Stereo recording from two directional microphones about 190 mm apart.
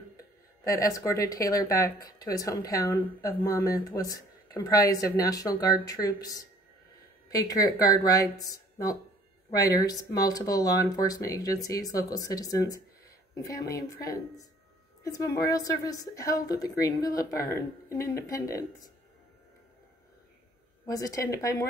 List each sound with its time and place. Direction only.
0.7 s a woman's voice: 20° left (ahead or behind)
20.8 s a woman's voice: 20° left (ahead or behind)